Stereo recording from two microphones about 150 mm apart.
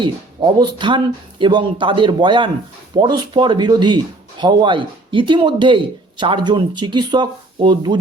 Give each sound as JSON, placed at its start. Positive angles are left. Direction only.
{"t": 0.0, "sound": "speech", "side_deg": -30}